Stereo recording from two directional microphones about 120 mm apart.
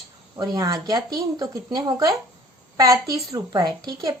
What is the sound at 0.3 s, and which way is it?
Speech, 30° right (ahead or behind).